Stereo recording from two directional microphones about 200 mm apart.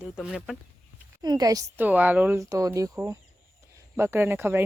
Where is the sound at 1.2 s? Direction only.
20° right (ahead or behind).